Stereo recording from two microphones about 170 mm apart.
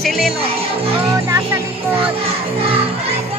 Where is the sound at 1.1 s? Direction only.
15° right (ahead or behind).